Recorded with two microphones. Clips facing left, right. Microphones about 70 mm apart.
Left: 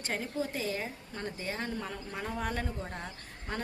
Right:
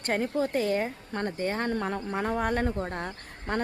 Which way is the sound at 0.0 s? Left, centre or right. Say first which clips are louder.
Right 7 dB; right.